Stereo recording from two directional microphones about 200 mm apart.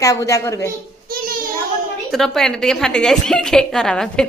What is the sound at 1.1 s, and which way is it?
Child singing, 45° right (ahead or behind).